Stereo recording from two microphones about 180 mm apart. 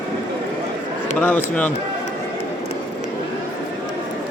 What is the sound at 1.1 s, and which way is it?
Speech, 10° left (ahead or behind).